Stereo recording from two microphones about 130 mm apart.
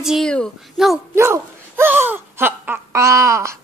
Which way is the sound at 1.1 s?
20° right (ahead or behind).